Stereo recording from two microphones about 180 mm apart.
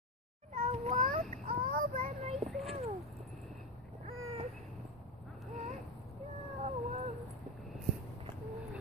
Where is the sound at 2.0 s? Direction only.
35° right (ahead or behind).